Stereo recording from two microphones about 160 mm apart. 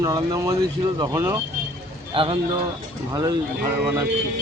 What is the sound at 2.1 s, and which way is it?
A man's voice, 35° right (ahead or behind).